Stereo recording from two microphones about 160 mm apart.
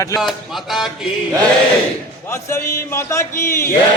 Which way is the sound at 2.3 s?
15° left (ahead or behind).